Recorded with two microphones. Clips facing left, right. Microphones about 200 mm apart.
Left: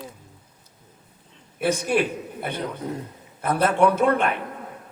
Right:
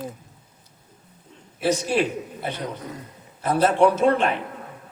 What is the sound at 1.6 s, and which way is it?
A man's voice, 55° left (ahead or behind).